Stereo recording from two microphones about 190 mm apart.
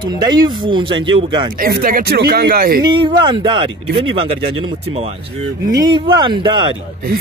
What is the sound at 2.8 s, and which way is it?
Speech, 25° right (ahead or behind).